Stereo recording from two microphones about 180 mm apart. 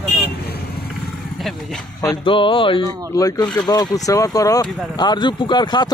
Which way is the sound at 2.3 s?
30° left (ahead or behind).